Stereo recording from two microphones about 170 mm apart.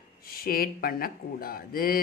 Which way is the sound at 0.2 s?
60° left (ahead or behind).